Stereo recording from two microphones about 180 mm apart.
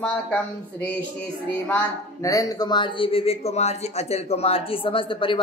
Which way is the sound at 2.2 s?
20° left (ahead or behind).